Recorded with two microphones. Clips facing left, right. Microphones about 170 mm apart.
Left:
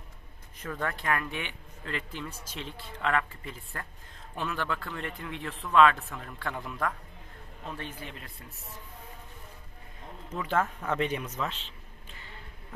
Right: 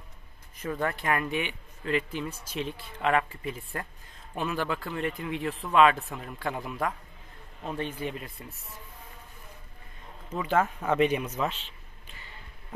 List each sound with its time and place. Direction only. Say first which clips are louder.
0.7 s speech: right 3 dB; 15° right (ahead or behind)
10.3 s speech: right 3 dB; 5° right (ahead or behind)